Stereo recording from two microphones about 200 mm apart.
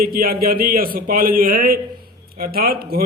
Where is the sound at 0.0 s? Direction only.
45° right (ahead or behind).